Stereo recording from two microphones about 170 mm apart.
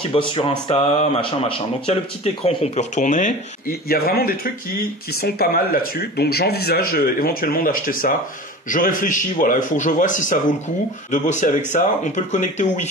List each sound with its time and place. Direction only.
0.0 s a man's voice: 30° left (ahead or behind)